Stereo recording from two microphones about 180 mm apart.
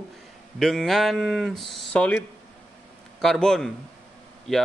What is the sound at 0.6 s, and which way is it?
Speech, centre (ahead or behind).